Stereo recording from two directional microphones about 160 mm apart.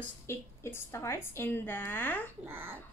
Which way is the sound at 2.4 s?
15° right (ahead or behind).